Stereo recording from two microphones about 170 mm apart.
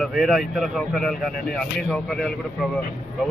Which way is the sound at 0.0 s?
Centre (ahead or behind).